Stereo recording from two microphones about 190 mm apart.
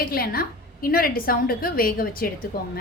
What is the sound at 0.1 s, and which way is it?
A woman's voice, 50° left (ahead or behind).